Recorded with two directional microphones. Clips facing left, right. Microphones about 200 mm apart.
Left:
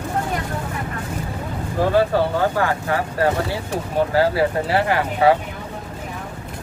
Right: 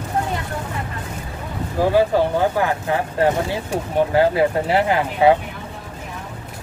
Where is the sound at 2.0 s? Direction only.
15° right (ahead or behind).